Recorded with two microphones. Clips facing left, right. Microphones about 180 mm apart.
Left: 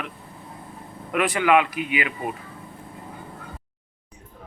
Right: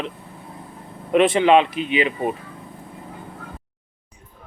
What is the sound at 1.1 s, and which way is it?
Speech, 25° right (ahead or behind).